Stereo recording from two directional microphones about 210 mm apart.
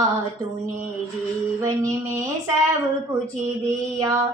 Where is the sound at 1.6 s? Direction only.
15° right (ahead or behind).